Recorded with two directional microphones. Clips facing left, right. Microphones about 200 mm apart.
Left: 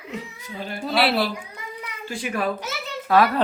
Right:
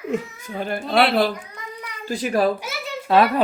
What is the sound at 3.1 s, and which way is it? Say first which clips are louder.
Speech: right 1 dB; 25° right (ahead or behind).